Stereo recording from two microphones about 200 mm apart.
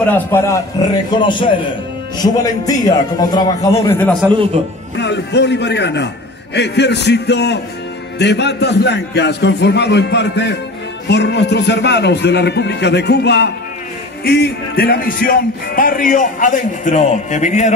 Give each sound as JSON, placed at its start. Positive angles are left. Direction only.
{"t": 0.0, "sound": "a man's voice", "side_deg": 10}
{"t": 2.4, "sound": "a man's voice", "side_deg": 20}
{"t": 4.9, "sound": "a man's voice", "side_deg": 60}
{"t": 14.2, "sound": "music", "side_deg": 55}